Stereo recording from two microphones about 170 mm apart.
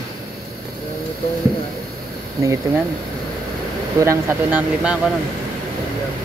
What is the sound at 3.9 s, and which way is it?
Speech, 15° right (ahead or behind).